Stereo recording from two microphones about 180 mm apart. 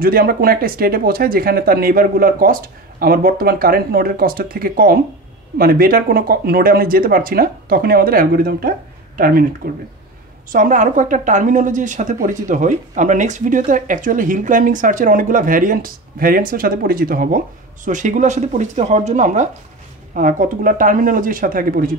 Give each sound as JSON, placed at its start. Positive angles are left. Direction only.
{"t": 0.0, "sound": "speech", "side_deg": -55}
{"t": 10.5, "sound": "a woman's voice", "side_deg": -45}